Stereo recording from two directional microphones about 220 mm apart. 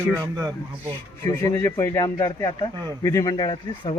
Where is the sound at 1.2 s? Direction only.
15° left (ahead or behind).